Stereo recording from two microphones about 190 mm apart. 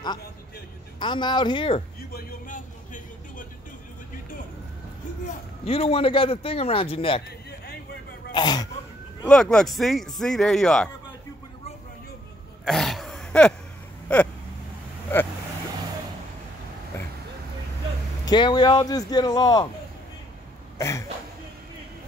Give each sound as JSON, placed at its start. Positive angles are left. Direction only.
{"t": 0.9, "sound": "a man's voice", "side_deg": 25}
{"t": 2.1, "sound": "vehicle", "side_deg": 45}
{"t": 5.7, "sound": "a man's voice", "side_deg": 30}
{"t": 8.3, "sound": "speech", "side_deg": 25}
{"t": 9.3, "sound": "speech", "side_deg": 5}
{"t": 12.6, "sound": "throat clearing", "side_deg": 0}
{"t": 14.0, "sound": "vehicle", "side_deg": 5}
{"t": 15.1, "sound": "speech", "side_deg": 10}
{"t": 18.2, "sound": "a man's voice", "side_deg": 25}
{"t": 20.7, "sound": "cough", "side_deg": 15}